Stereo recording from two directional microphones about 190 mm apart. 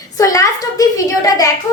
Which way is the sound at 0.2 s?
15° left (ahead or behind).